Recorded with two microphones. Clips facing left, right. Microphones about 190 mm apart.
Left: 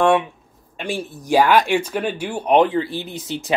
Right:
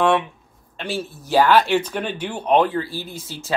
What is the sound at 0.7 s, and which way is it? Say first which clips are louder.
Speech: left 1 dB; 15° left (ahead or behind).